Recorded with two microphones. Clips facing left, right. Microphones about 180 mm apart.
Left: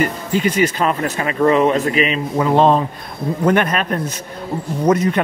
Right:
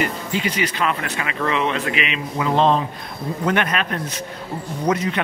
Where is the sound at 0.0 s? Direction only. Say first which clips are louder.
Left 5 dB; 45° left (ahead or behind).